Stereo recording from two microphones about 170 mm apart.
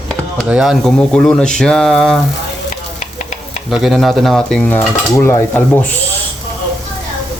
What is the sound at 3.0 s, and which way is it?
Stir, 45° left (ahead or behind).